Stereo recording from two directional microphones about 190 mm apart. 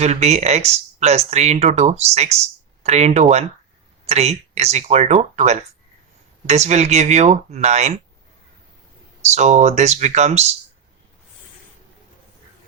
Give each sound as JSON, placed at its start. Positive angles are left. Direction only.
{"t": 0.0, "sound": "speech", "side_deg": -35}
{"t": 9.2, "sound": "speech", "side_deg": -35}